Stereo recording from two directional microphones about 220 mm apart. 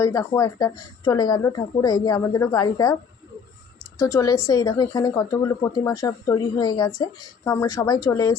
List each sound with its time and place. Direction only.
0.0 s speech: 15° left (ahead or behind)
3.9 s speech: 15° left (ahead or behind)